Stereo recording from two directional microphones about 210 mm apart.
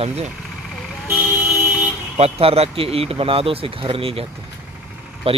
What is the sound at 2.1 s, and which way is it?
Speech, 30° right (ahead or behind).